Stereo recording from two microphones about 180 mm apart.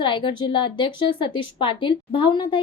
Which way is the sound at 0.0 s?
25° left (ahead or behind).